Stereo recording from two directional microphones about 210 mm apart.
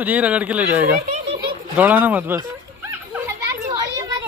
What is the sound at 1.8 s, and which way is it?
Children playing, 5° right (ahead or behind).